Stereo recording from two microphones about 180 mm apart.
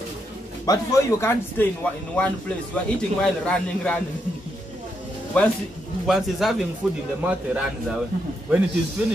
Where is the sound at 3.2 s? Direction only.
5° left (ahead or behind).